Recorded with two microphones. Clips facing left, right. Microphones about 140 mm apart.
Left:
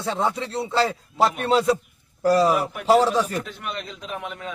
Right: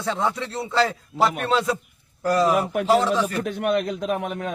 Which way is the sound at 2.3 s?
30° left (ahead or behind).